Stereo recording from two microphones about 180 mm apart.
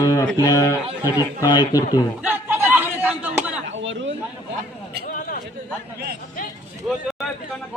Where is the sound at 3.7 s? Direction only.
90° right.